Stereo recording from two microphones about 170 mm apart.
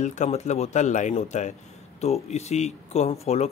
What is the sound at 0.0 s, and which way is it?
Speech, 45° left (ahead or behind).